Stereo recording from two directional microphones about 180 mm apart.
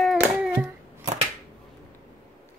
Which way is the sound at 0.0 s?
Centre (ahead or behind).